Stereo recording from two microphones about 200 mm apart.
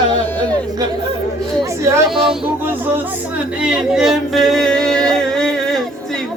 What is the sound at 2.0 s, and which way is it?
Music, centre (ahead or behind).